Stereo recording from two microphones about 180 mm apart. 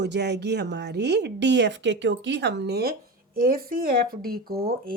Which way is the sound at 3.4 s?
50° right (ahead or behind).